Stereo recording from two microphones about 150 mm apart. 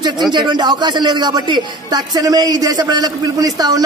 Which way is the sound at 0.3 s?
30° right (ahead or behind).